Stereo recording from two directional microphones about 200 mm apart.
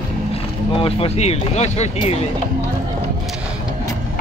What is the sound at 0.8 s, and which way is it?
Speech, 30° left (ahead or behind).